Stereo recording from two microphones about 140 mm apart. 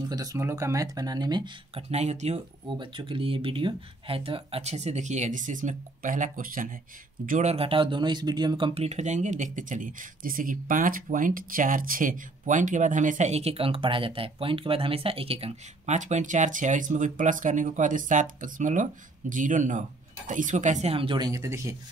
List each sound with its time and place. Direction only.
0.1 s speech: 25° right (ahead or behind)
1.8 s speech: 50° right (ahead or behind)
2.8 s speech: 35° right (ahead or behind); by 6.7 s 75° right (ahead or behind)
7.2 s speech: 60° right (ahead or behind)
7.5 s speech: 40° right (ahead or behind)
8.8 s speech: 55° right (ahead or behind); by 21.3 s 40° right (ahead or behind)
21.3 s speech: 20° right (ahead or behind)